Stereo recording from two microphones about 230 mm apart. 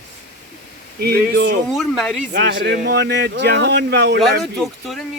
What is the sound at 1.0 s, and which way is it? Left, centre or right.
Speech, right.